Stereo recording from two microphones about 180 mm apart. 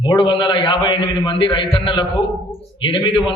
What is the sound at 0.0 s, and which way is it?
A man's voice, 25° left (ahead or behind).